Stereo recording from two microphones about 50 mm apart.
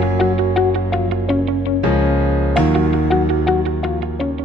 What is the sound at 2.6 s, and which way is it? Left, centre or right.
Music, centre.